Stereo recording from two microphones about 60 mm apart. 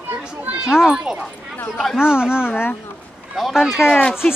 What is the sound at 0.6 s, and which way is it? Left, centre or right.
Speech, centre.